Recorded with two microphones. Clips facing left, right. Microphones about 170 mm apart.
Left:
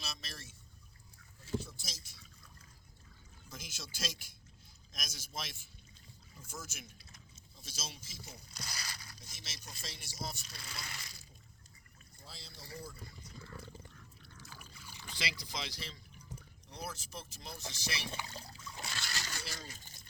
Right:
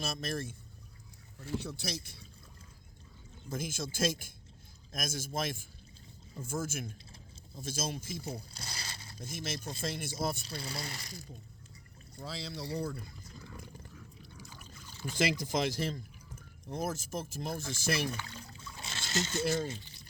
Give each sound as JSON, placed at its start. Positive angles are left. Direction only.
{"t": 0.0, "sound": "speech", "side_deg": -50}
{"t": 1.4, "sound": "speech", "side_deg": -70}
{"t": 3.5, "sound": "speech", "side_deg": -50}
{"t": 8.5, "sound": "crumpling", "side_deg": -25}
{"t": 9.2, "sound": "speech", "side_deg": -55}
{"t": 9.6, "sound": "speech", "side_deg": -25}
{"t": 9.8, "sound": "speech", "side_deg": -55}
{"t": 10.6, "sound": "speech", "side_deg": -35}
{"t": 12.1, "sound": "speech", "side_deg": -85}
{"t": 13.6, "sound": "roaring cats", "side_deg": -10}
{"t": 15.0, "sound": "speech", "side_deg": -50}
{"t": 18.5, "sound": "a sound", "side_deg": -25}
{"t": 19.5, "sound": "speech", "side_deg": -25}
{"t": 19.8, "sound": "a sound", "side_deg": 45}